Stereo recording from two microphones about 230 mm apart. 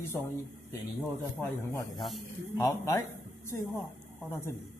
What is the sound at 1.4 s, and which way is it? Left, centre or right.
Speech, centre.